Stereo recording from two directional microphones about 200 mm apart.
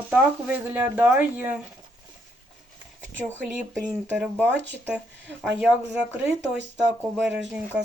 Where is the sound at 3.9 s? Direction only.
5° right (ahead or behind).